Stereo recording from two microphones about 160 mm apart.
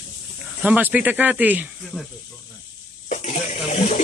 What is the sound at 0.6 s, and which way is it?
Speech, 10° right (ahead or behind).